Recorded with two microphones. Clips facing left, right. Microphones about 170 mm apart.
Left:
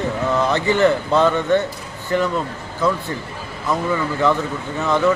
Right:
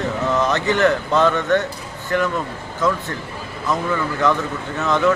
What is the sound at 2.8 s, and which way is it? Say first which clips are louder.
Speech: left 1 dB; 10° left (ahead or behind).